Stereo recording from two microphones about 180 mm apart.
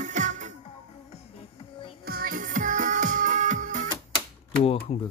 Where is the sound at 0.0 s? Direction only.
45° right (ahead or behind).